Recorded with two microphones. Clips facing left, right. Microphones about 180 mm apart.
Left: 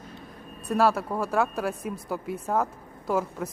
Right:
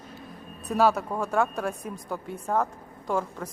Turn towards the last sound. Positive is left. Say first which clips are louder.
# left 2 dB
turn(degrees=5)  # may be behind; listen again after turning